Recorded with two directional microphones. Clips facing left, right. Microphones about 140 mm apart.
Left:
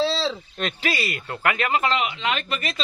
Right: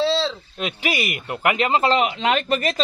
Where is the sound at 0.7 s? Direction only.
15° right (ahead or behind).